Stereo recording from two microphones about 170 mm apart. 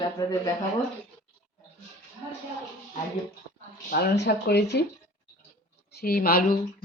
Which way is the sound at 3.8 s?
80° left.